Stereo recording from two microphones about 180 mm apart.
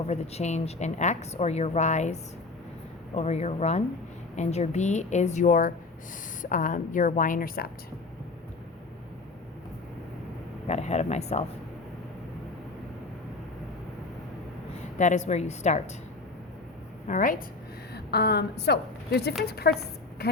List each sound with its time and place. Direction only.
0.1 s speech: 40° left (ahead or behind)
3.2 s a woman's voice: 35° left (ahead or behind); by 7.7 s 55° left (ahead or behind)
10.7 s speech: 40° left (ahead or behind)
14.9 s speech: 40° left (ahead or behind)
17.1 s a woman's voice: 45° left (ahead or behind)
17.9 s a woman's voice: 65° left (ahead or behind)
20.2 s music: 60° left (ahead or behind)